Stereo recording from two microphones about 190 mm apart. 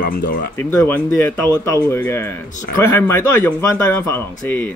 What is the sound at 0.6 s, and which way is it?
Speech, 15° left (ahead or behind).